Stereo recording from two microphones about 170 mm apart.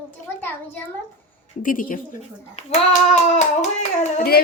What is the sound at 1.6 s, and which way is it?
Hands, 55° left (ahead or behind).